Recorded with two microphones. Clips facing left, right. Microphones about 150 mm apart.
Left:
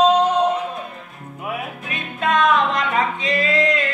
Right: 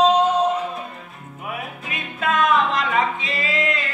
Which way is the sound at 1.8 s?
5° right (ahead or behind).